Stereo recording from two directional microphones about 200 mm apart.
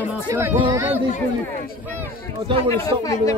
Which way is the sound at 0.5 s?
25° right (ahead or behind).